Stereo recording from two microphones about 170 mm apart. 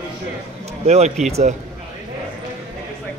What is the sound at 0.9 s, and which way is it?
Speech, 40° right (ahead or behind).